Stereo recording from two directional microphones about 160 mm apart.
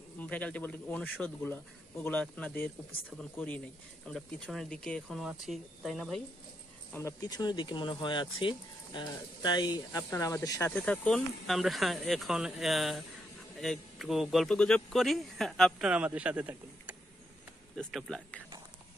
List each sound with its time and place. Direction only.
0.2 s speech: 10° left (ahead or behind)
6.9 s speech: 20° left (ahead or behind)
10.7 s speech: 10° left (ahead or behind); by 16.9 s 10° right (ahead or behind)
17.7 s speech: 5° left (ahead or behind)